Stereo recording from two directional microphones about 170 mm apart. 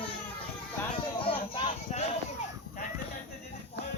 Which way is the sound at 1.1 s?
30° left (ahead or behind).